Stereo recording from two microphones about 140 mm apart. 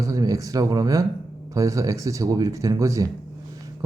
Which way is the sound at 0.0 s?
25° right (ahead or behind).